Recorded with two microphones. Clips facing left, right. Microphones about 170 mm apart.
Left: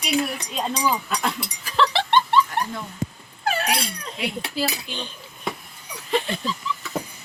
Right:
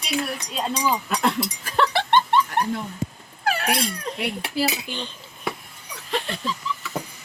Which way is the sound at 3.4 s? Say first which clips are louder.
Even; 70° right (ahead or behind).